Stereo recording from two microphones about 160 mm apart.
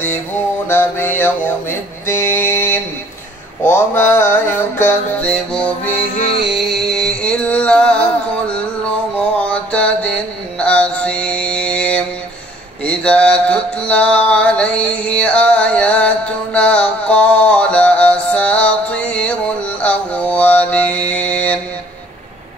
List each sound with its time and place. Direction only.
0.7 s mantra: 15° left (ahead or behind)
2.0 s music: 15° left (ahead or behind)
6.1 s music: 40° left (ahead or behind)
6.5 s music: centre (ahead or behind)
9.4 s a sound: 5° left (ahead or behind)
10.6 s mantra: 5° left (ahead or behind)